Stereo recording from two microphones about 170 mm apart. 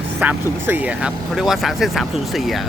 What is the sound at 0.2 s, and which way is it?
Speech, 10° right (ahead or behind).